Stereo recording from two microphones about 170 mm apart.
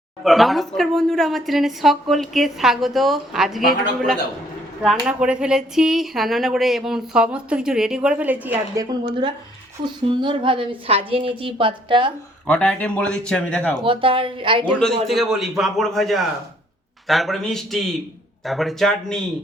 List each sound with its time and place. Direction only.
0.3 s speech: centre (ahead or behind)
4.8 s speech: centre (ahead or behind)
8.8 s a woman's voice: 25° right (ahead or behind)
12.5 s speech: 5° left (ahead or behind)
13.8 s a woman's voice: 30° right (ahead or behind)
15.0 s speech: centre (ahead or behind)